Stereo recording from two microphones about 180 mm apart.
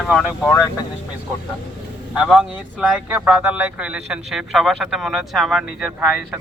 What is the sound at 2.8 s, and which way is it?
Speech, 10° right (ahead or behind).